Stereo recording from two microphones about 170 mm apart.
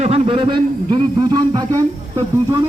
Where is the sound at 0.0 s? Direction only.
35° right (ahead or behind).